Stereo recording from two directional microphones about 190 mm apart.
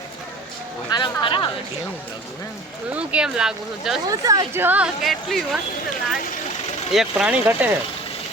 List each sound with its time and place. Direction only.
0.9 s a sound: 25° left (ahead or behind)
2.9 s speech: 5° right (ahead or behind)
4.1 s speech: 15° right (ahead or behind); by 5.5 s centre (ahead or behind)
6.9 s speech: 5° right (ahead or behind)